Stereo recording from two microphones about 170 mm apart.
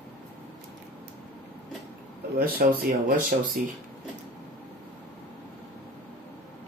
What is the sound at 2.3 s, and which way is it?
Speech, 60° right (ahead or behind).